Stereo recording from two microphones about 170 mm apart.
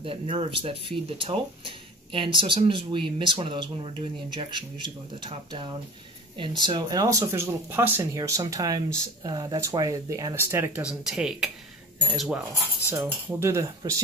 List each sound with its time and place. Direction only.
0.0 s speech: 30° right (ahead or behind); by 13.9 s 15° right (ahead or behind)